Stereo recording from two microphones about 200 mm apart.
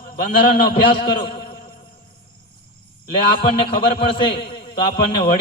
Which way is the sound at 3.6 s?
25° left (ahead or behind).